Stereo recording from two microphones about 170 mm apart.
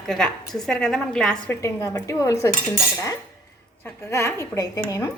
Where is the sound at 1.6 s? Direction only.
15° left (ahead or behind).